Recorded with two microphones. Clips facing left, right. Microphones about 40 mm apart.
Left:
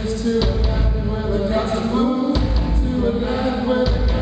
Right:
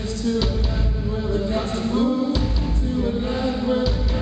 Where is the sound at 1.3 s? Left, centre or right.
Centre.